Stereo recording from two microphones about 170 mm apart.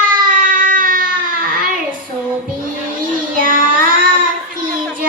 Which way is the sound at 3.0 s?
55° right (ahead or behind).